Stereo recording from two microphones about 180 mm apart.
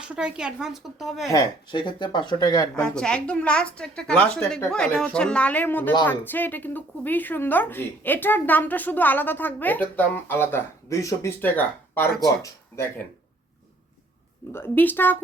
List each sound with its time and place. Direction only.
0.0 s a woman's voice: 5° right (ahead or behind)
1.3 s speech: 20° left (ahead or behind)
2.7 s a woman's voice: 5° left (ahead or behind)
14.5 s speech: 10° left (ahead or behind)